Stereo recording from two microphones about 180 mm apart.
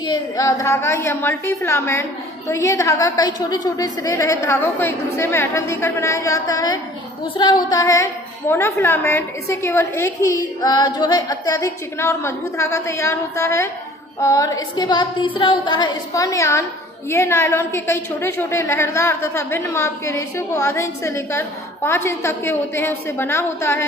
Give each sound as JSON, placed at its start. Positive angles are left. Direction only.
{"t": 0.0, "sound": "a woman's voice", "side_deg": 20}